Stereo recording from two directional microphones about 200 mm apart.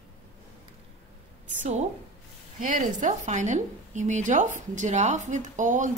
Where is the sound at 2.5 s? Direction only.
40° right (ahead or behind).